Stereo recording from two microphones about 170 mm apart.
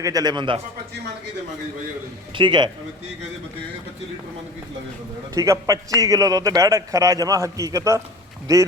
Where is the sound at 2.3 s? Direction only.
30° right (ahead or behind).